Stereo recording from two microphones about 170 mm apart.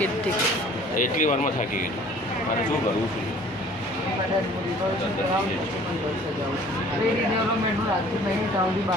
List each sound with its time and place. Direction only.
0.9 s speech: 50° left (ahead or behind)